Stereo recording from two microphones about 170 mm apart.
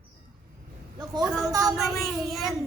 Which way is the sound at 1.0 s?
20° right (ahead or behind).